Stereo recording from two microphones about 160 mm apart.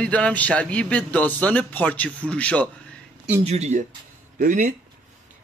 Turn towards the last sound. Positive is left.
turn(degrees=-55)  # may be behind; listen again after turning